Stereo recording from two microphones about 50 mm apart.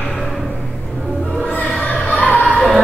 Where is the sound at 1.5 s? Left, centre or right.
Left.